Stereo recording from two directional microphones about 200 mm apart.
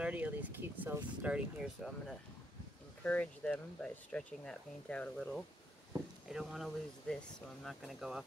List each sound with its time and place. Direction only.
0.0 s speech: 10° right (ahead or behind)